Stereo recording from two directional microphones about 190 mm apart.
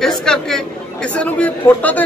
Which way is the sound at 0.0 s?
5° left (ahead or behind).